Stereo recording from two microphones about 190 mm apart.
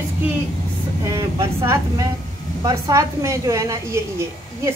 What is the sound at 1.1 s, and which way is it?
A woman's voice, 15° right (ahead or behind).